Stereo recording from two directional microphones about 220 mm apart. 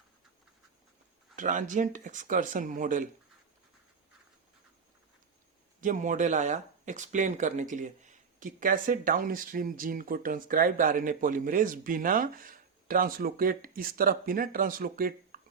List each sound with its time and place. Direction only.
1.4 s speech: 35° right (ahead or behind)
5.8 s speech: 35° right (ahead or behind)